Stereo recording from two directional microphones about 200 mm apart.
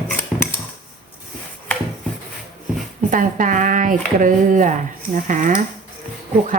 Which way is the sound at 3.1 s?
40° right (ahead or behind).